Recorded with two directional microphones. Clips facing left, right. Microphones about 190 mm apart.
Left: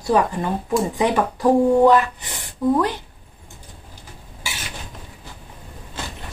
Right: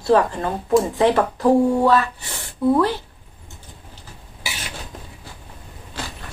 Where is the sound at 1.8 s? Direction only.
15° left (ahead or behind).